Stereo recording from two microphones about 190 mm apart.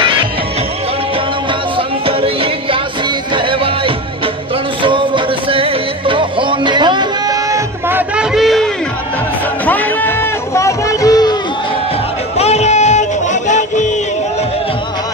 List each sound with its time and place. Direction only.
0.0 s music: 25° right (ahead or behind)
1.8 s music: 30° right (ahead or behind)
8.2 s a sound: centre (ahead or behind)
9.7 s music: 10° left (ahead or behind)
12.4 s music: 35° left (ahead or behind)